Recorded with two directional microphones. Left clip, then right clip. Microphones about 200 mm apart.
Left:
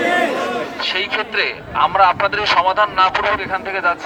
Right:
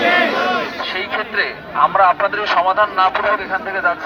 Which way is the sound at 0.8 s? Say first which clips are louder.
Left 2 dB; 30° left (ahead or behind).